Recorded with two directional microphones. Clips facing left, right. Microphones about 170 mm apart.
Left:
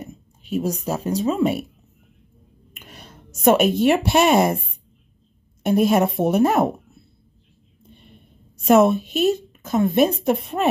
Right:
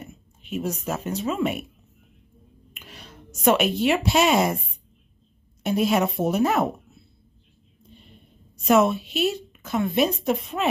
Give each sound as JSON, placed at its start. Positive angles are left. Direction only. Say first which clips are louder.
{"t": 0.0, "sound": "speech", "louder": "left 5 dB", "side_deg": 40}
{"t": 2.7, "sound": "a sound", "louder": "left 2 dB", "side_deg": 50}
{"t": 3.3, "sound": "a woman's voice", "louder": "left 4 dB", "side_deg": 50}
{"t": 8.6, "sound": "a woman's voice", "louder": "left 4 dB", "side_deg": 50}